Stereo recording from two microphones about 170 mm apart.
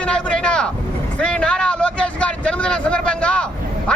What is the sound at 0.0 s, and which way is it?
Vehicle, 5° left (ahead or behind).